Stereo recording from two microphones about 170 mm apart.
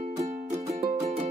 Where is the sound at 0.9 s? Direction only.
45° right (ahead or behind).